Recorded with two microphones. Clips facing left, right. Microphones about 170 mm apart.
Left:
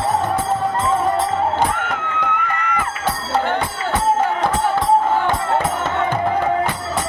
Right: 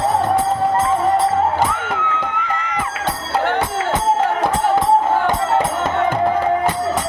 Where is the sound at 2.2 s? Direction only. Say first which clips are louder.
Left 1 dB; 60° left (ahead or behind).